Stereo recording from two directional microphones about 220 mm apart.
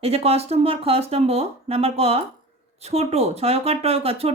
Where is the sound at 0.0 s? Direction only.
25° right (ahead or behind).